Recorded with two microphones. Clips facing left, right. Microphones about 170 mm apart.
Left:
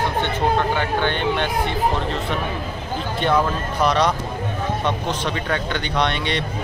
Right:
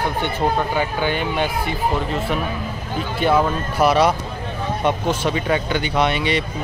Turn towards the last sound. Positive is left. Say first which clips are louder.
# right 3 dB
turn(degrees=-5)  # may be behind; listen again after turning